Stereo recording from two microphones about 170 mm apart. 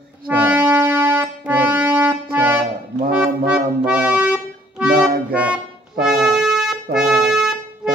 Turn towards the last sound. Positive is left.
turn(degrees=-5)  # may be behind; listen again after turning